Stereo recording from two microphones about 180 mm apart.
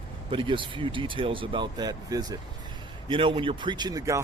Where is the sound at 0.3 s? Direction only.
30° right (ahead or behind).